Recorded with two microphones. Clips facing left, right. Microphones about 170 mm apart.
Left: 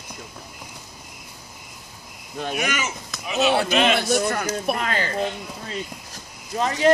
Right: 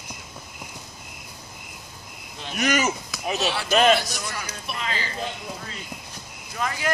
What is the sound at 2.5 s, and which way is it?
Speech, 40° right (ahead or behind).